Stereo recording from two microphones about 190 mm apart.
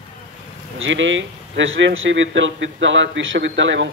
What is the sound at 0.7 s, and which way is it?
A man's voice, 85° right.